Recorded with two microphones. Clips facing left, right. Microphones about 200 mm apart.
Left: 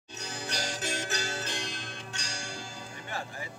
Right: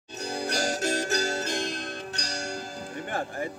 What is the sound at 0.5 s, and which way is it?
Music, 45° right (ahead or behind).